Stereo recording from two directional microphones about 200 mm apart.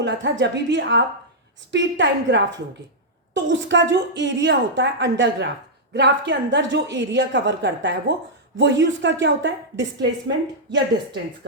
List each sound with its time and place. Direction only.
0.0 s a woman's voice: 60° right (ahead or behind)